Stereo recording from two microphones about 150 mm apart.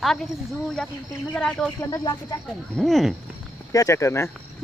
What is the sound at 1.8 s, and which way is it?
Speech, 25° left (ahead or behind).